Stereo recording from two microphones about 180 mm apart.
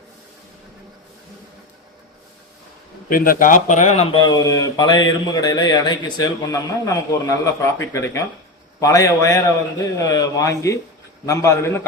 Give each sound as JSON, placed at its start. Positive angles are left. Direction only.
{"t": 3.1, "sound": "a man's voice", "side_deg": 50}